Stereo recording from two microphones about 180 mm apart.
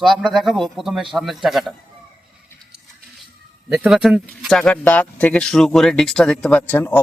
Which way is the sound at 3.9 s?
Centre (ahead or behind).